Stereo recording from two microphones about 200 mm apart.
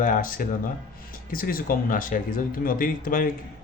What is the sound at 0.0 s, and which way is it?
Speech, 45° left (ahead or behind).